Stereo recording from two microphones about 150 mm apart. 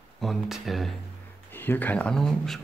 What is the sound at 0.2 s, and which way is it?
Speech, centre (ahead or behind).